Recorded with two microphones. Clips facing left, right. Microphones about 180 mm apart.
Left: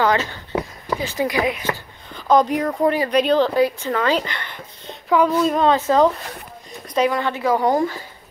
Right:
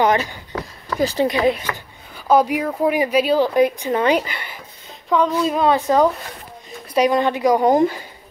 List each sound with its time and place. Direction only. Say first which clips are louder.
0.0 s speech: right 2 dB; 15° right (ahead or behind)
0.5 s a sound: left 4 dB; 15° left (ahead or behind)
0.9 s a woman's voice: right 3 dB; 35° right (ahead or behind)
2.1 s speech: even; 10° right (ahead or behind)
4.3 s a sound: even; 10° right (ahead or behind)
5.1 s speech: left 1 dB; 5° left (ahead or behind)
5.5 s speech: even; 10° right (ahead or behind)
7.1 s a woman's voice: right 4 dB; 20° right (ahead or behind)